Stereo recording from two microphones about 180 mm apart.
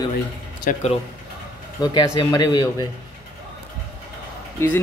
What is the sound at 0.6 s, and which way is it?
Speech, 45° left (ahead or behind).